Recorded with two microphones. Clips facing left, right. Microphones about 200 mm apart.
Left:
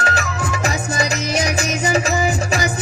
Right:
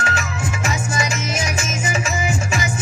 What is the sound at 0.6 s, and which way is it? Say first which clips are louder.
Music: left 2 dB; 35° left (ahead or behind).